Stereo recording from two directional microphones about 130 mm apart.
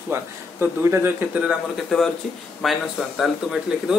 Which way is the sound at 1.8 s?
5° left (ahead or behind).